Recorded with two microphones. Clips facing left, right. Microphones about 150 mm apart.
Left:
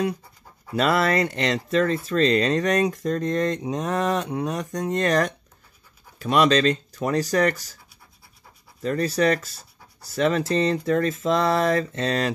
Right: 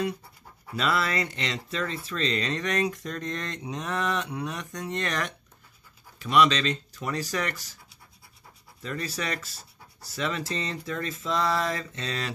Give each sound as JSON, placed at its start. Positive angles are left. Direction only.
{"t": 0.7, "sound": "speech", "side_deg": 50}
{"t": 8.8, "sound": "speech", "side_deg": 40}
{"t": 10.1, "sound": "mantra", "side_deg": 45}